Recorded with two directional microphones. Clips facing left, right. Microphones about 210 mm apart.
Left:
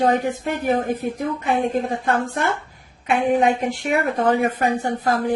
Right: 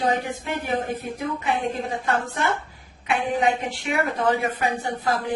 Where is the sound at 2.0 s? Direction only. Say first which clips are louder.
Left 3 dB; 50° left (ahead or behind).